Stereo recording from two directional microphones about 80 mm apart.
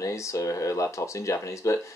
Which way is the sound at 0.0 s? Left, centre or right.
Left.